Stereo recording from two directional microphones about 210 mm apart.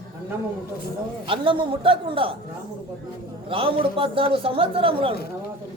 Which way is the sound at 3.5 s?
25° right (ahead or behind).